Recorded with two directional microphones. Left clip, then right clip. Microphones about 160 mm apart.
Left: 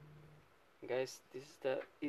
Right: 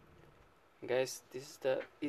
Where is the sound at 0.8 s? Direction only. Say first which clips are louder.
Right 5 dB; 15° right (ahead or behind).